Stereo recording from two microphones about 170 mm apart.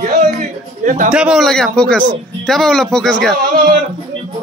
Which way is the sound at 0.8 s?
50° right (ahead or behind).